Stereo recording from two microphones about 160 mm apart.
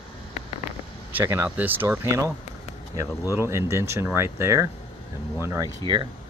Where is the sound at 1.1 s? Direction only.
15° right (ahead or behind).